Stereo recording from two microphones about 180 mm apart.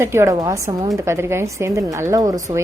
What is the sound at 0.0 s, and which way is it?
Speech, 15° right (ahead or behind).